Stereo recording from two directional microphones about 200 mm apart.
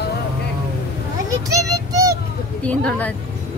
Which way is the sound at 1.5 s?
20° right (ahead or behind).